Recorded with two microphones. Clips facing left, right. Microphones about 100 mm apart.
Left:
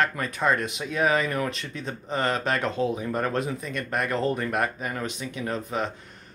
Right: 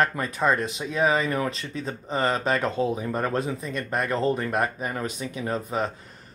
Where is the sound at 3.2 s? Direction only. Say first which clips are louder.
Right 1 dB; 35° right (ahead or behind).